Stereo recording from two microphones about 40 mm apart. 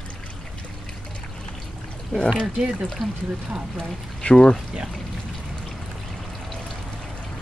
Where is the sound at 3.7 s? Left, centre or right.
Left.